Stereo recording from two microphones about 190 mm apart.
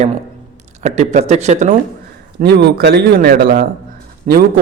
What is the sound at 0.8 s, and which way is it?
A man's voice, 35° right (ahead or behind).